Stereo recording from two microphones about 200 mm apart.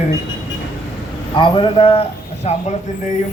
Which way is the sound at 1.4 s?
25° left (ahead or behind).